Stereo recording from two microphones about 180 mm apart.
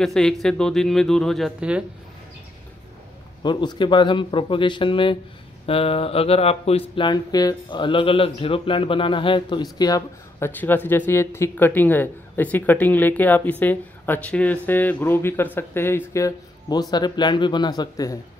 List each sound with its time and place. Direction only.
0.0 s speech: centre (ahead or behind)
3.4 s speech: 25° left (ahead or behind)